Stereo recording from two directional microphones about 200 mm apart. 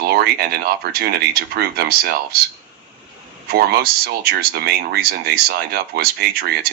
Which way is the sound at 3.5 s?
50° right (ahead or behind).